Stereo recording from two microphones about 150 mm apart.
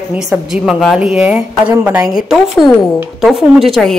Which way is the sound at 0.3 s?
Centre (ahead or behind).